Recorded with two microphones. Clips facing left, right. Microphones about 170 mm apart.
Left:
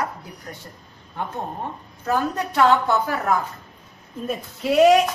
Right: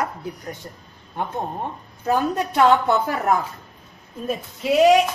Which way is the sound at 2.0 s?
20° right (ahead or behind).